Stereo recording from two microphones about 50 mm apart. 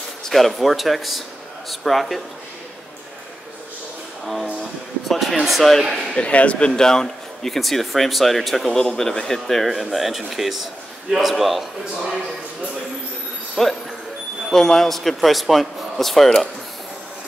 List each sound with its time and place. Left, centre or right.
0.2 s speech: centre
5.0 s speech: centre
6.1 s speech: left
6.7 s speech: centre
13.6 s speech: centre